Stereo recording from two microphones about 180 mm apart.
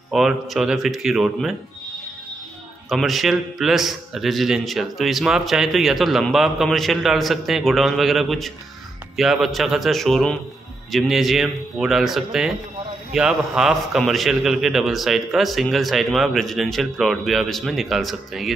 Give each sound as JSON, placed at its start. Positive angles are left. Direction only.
{"t": 0.1, "sound": "a man's voice", "side_deg": 0}
{"t": 2.9, "sound": "a man's voice", "side_deg": 0}